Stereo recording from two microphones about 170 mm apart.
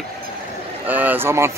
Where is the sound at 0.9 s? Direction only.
10° right (ahead or behind).